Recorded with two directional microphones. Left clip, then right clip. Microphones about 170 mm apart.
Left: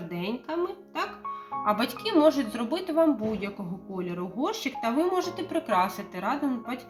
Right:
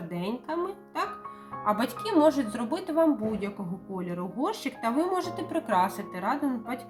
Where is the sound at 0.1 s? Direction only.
5° right (ahead or behind).